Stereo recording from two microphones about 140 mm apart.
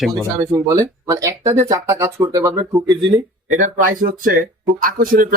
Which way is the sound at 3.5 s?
70° right (ahead or behind).